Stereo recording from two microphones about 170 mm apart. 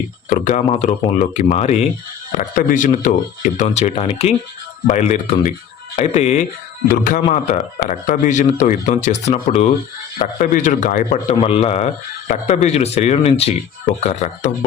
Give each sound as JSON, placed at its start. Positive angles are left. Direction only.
{"t": 0.3, "sound": "speech", "side_deg": 45}
{"t": 11.3, "sound": "speech", "side_deg": 35}